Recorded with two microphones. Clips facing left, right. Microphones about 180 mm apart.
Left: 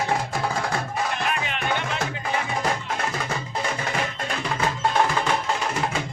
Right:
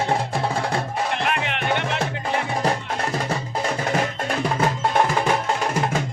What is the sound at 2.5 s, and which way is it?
Music, 35° right (ahead or behind).